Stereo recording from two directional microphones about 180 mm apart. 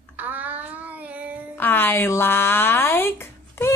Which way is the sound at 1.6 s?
10° left (ahead or behind).